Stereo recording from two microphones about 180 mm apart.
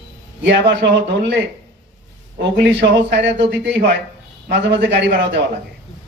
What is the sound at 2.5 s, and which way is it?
A man's voice, 70° right (ahead or behind).